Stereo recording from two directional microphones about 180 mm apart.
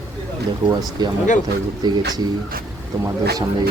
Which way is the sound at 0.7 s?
20° right (ahead or behind).